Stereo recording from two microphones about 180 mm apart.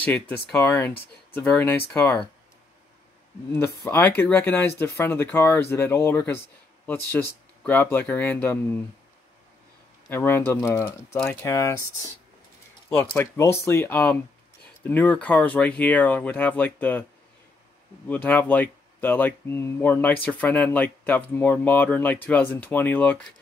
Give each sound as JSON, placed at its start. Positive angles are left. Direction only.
{"t": 0.0, "sound": "speech", "side_deg": 10}
{"t": 3.5, "sound": "speech", "side_deg": 15}
{"t": 10.0, "sound": "speech", "side_deg": 10}
{"t": 18.0, "sound": "speech", "side_deg": 10}